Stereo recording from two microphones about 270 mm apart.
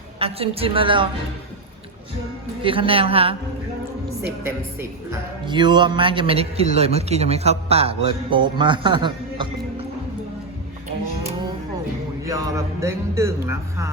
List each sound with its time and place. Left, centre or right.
0.2 s a man's voice: right
2.6 s a man's voice: centre
4.2 s a man's voice: centre
12.2 s speech: centre